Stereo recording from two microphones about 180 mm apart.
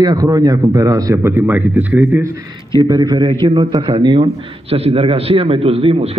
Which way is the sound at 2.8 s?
25° right (ahead or behind).